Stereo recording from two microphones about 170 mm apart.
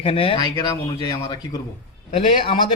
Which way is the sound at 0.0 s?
35° left (ahead or behind).